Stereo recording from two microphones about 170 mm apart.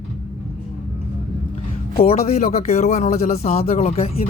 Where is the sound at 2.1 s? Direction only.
40° left (ahead or behind).